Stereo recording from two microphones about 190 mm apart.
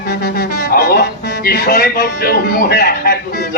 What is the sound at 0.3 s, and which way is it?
A man's voice, 50° left (ahead or behind).